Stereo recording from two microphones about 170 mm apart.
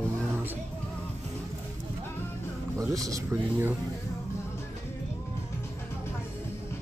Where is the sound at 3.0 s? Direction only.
15° right (ahead or behind).